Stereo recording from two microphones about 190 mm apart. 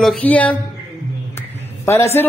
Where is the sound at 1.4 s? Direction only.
15° left (ahead or behind).